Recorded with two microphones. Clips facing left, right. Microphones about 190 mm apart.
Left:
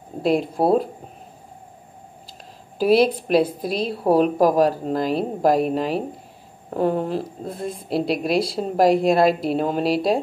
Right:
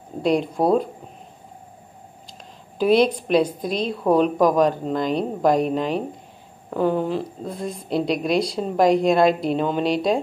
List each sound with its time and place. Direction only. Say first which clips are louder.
0.2 s a woman's voice: even; 5° left (ahead or behind)
2.8 s a woman's voice: left 1 dB; 5° left (ahead or behind)
3.9 s a woman's voice: left 1 dB; 30° left (ahead or behind)
4.2 s a woman's voice: left 1 dB; 5° left (ahead or behind)